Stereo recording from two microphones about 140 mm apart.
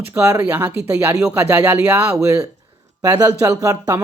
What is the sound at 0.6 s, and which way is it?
Speech, 10° right (ahead or behind).